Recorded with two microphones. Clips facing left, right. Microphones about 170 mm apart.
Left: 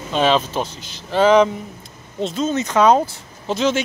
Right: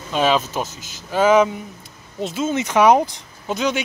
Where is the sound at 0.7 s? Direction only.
45° right (ahead or behind).